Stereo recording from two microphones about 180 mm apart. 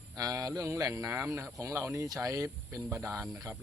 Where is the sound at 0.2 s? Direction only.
20° right (ahead or behind).